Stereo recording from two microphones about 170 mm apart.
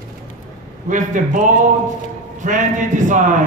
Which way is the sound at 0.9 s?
50° right (ahead or behind).